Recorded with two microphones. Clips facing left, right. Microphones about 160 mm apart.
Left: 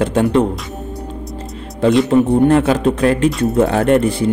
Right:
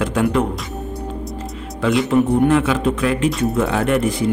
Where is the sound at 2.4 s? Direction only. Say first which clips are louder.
Left 3 dB; 40° left (ahead or behind).